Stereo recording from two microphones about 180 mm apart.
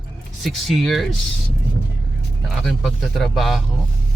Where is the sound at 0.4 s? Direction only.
Centre (ahead or behind).